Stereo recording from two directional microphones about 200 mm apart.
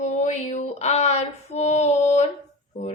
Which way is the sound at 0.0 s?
35° left (ahead or behind).